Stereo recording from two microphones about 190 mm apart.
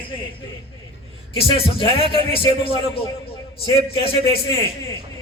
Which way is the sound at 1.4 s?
30° left (ahead or behind).